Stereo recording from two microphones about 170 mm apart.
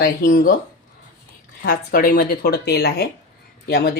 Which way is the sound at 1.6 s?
60° left (ahead or behind).